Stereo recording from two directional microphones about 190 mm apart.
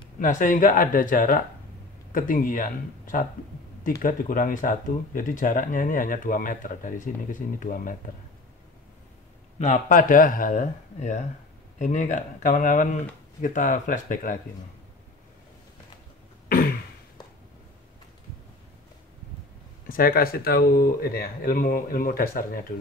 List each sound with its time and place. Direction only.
0.2 s speech: 45° left (ahead or behind)
9.6 s speech: 40° left (ahead or behind)
16.4 s throat clearing: 50° left (ahead or behind)
19.9 s speech: 50° left (ahead or behind)